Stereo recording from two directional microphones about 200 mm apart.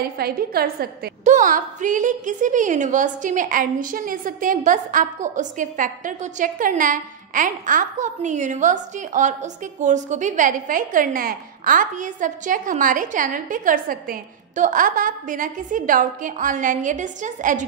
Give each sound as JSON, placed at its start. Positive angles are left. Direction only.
{"t": 0.2, "sound": "a woman's voice", "side_deg": -50}